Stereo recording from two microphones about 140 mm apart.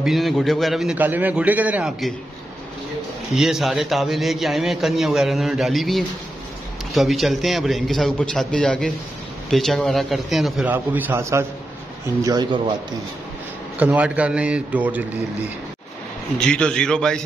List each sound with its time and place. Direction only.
0.0 s a man's voice: centre (ahead or behind)
0.9 s a man's voice: 10° right (ahead or behind)
3.3 s a man's voice: centre (ahead or behind)
10.7 s a man's voice: 15° right (ahead or behind)
13.7 s a man's voice: 10° right (ahead or behind)
16.3 s a man's voice: 5° left (ahead or behind)